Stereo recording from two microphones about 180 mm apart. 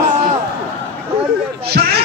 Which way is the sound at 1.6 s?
65° right (ahead or behind).